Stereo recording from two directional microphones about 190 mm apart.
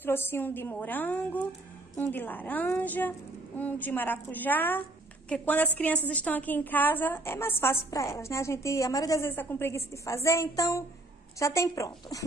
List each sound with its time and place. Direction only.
0.0 s a woman's voice: 10° left (ahead or behind)